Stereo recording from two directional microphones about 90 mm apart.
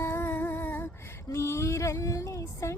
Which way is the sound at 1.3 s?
35° left (ahead or behind).